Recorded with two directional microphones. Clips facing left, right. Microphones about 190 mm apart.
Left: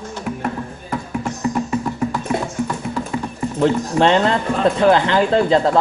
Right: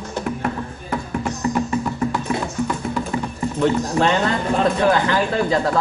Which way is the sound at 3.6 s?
30° left (ahead or behind).